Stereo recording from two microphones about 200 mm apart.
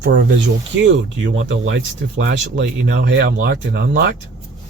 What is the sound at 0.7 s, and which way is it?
Speech, 65° right (ahead or behind).